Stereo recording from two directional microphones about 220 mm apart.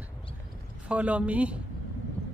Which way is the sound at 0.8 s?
5° right (ahead or behind).